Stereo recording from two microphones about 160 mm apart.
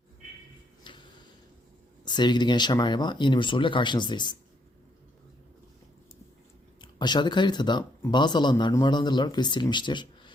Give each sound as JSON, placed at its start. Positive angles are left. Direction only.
{"t": 0.9, "sound": "a sound", "side_deg": 30}
{"t": 2.0, "sound": "speech", "side_deg": 30}
{"t": 6.8, "sound": "speech", "side_deg": 30}